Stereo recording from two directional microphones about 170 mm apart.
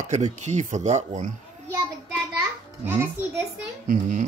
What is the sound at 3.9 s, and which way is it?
Speech, 50° right (ahead or behind).